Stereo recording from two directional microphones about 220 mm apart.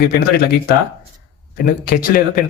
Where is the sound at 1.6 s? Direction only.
40° left (ahead or behind).